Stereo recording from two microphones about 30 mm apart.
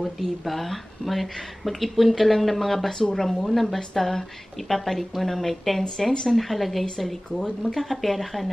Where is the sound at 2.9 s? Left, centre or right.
Centre.